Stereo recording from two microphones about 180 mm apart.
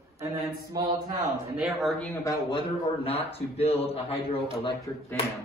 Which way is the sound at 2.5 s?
35° left (ahead or behind).